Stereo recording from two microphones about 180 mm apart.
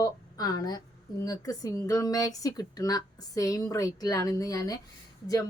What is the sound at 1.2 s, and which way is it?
Speech, 20° left (ahead or behind).